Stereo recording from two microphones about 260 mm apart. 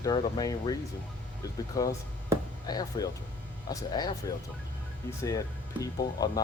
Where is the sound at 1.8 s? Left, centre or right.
Centre.